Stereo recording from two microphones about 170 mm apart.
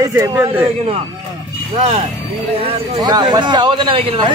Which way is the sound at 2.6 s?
35° right (ahead or behind).